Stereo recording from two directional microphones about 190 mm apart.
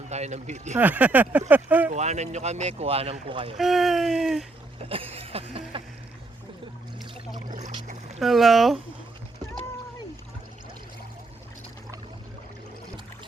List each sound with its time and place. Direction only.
0.1 s speech: 35° right (ahead or behind)
0.8 s speech: 10° right (ahead or behind)
1.9 s speech: 35° right (ahead or behind)
3.6 s speech: centre (ahead or behind)
4.8 s a sound: 30° right (ahead or behind)
7.3 s boat: 40° right (ahead or behind)
8.2 s speech: centre (ahead or behind)